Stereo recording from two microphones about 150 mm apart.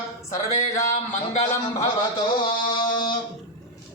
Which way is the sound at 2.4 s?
30° left (ahead or behind).